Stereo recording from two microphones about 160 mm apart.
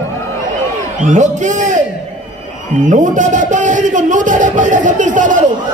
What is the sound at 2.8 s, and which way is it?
Speech, 55° right (ahead or behind).